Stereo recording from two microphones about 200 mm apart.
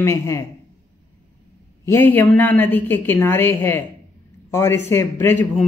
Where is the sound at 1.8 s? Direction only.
10° left (ahead or behind).